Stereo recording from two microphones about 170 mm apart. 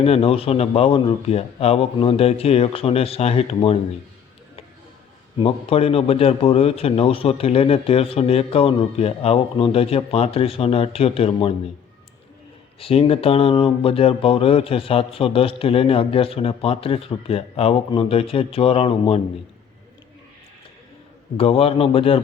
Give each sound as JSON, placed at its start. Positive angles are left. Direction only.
{"t": 0.0, "sound": "speech", "side_deg": 35}
{"t": 5.4, "sound": "speech", "side_deg": 35}
{"t": 12.8, "sound": "speech", "side_deg": 35}
{"t": 21.3, "sound": "speech", "side_deg": 35}